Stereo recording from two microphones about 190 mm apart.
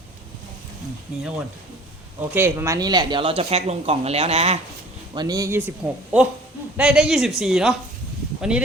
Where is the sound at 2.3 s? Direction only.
10° right (ahead or behind); by 4.6 s 35° right (ahead or behind).